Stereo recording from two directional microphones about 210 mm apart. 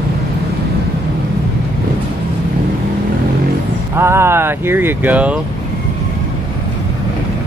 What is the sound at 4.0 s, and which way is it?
Speech, 10° right (ahead or behind).